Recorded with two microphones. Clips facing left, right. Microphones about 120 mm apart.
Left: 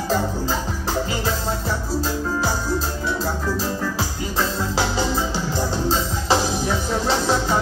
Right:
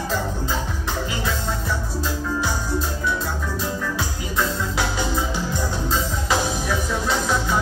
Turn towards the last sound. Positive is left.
turn(degrees=30)  # may be behind; listen again after turning